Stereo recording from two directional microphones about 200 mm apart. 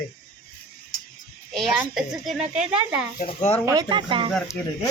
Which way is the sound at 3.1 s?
40° left (ahead or behind).